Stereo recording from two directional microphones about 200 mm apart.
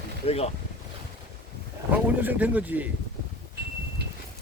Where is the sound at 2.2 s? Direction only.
10° right (ahead or behind).